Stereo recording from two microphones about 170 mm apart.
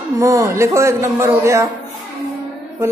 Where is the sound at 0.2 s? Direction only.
20° right (ahead or behind).